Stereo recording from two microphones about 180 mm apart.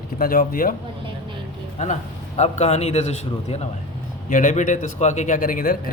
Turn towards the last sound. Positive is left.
turn(degrees=55)  # may be behind; listen again after turning